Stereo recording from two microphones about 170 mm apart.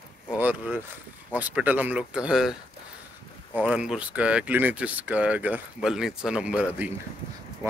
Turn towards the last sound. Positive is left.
turn(degrees=-5)  # may be behind; listen again after turning